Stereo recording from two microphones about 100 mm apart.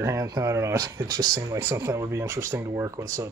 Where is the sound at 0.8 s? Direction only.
40° right (ahead or behind).